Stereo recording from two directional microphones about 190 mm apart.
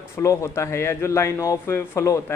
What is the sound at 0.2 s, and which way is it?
A man's voice, 15° left (ahead or behind).